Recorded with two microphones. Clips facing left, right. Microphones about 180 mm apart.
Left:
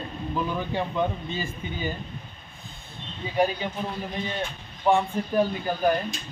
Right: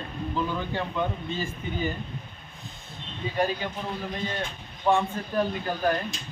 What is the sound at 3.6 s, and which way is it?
Speech, 15° left (ahead or behind).